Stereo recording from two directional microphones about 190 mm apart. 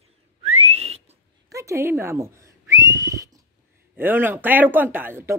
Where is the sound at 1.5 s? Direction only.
15° right (ahead or behind).